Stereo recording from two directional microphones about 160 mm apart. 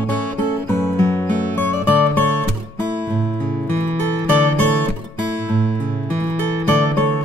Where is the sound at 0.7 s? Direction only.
15° left (ahead or behind).